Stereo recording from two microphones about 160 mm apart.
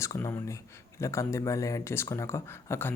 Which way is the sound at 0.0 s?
20° left (ahead or behind).